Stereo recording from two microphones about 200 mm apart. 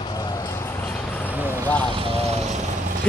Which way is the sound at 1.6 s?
5° left (ahead or behind).